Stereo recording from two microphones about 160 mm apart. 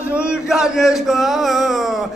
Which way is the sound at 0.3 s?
Centre (ahead or behind).